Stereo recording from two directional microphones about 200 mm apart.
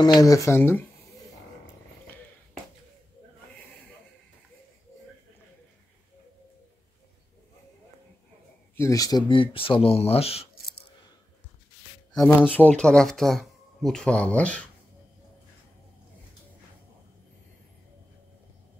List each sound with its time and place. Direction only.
0.0 s speech: 20° left (ahead or behind)
8.7 s speech: 15° left (ahead or behind)
12.2 s speech: 5° right (ahead or behind)
12.4 s speech: 5° left (ahead or behind)